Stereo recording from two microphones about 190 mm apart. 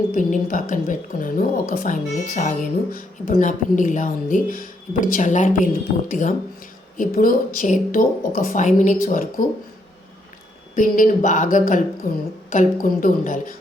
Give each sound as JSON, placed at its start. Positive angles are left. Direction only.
{"t": 0.1, "sound": "speech", "side_deg": 45}
{"t": 10.8, "sound": "speech", "side_deg": 45}